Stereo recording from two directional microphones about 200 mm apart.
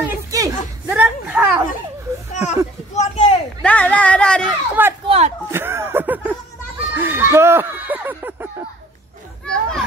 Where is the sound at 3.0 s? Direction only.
35° left (ahead or behind).